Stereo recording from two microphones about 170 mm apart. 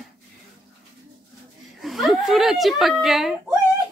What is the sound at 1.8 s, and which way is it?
A woman's voice, centre (ahead or behind).